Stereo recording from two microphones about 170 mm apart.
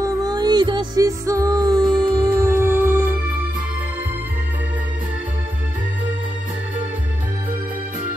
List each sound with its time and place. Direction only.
0.0 s music: 25° right (ahead or behind)
2.5 s music: 15° right (ahead or behind)